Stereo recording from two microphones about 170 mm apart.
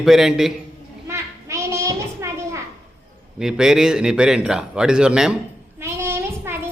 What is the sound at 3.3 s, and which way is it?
A man's voice, 5° right (ahead or behind).